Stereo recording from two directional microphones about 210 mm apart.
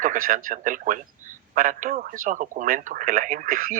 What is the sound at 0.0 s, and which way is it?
Speech, 40° right (ahead or behind).